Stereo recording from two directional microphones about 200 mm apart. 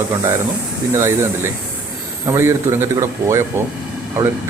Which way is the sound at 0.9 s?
10° right (ahead or behind).